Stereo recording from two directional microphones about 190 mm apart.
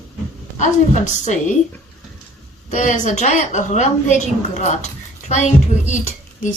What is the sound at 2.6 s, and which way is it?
A woman's voice, 40° left (ahead or behind).